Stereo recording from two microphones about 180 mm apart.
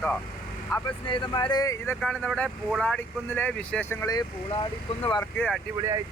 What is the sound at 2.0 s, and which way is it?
Speech, 5° left (ahead or behind).